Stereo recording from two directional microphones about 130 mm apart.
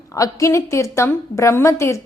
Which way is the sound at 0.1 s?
25° left (ahead or behind).